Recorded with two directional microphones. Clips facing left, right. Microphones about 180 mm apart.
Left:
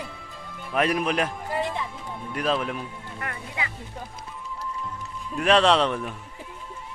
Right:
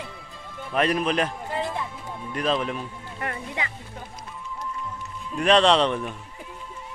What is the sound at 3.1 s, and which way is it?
Music, 30° right (ahead or behind).